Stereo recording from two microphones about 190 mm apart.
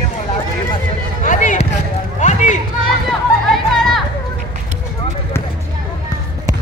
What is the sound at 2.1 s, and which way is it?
Run, 40° left (ahead or behind).